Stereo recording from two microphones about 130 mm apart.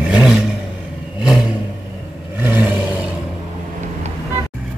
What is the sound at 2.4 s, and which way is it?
Vehicle, 15° right (ahead or behind).